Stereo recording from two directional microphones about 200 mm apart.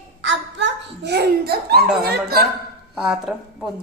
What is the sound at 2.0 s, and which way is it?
Speech, 50° right (ahead or behind).